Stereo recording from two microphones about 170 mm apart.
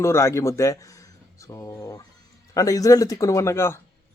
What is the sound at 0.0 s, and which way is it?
Speech, 15° left (ahead or behind).